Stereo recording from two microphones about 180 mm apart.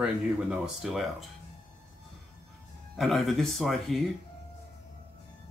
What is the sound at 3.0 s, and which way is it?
Speech, centre (ahead or behind).